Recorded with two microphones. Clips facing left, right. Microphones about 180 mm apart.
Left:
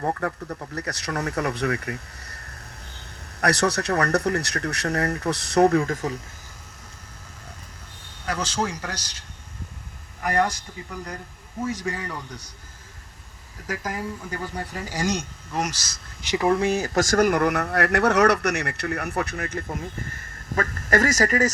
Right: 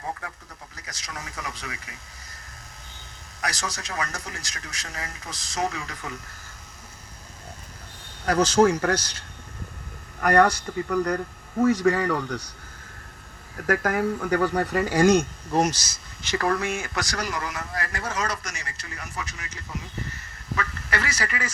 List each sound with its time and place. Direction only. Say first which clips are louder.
0.0 s speech: left 9 dB; 60° left (ahead or behind)
3.4 s speech: left 10 dB; 65° left (ahead or behind); by 6.1 s 45° left (ahead or behind)
8.2 s speech: right 8 dB; 40° right (ahead or behind); by 12.5 s 70° right (ahead or behind)
13.6 s speech: right 7 dB; 60° right (ahead or behind)
15.7 s speech: right 1 dB; 15° right (ahead or behind)
16.3 s speech: left 3 dB; 20° left (ahead or behind)
16.6 s speech: left 7 dB; 35° left (ahead or behind)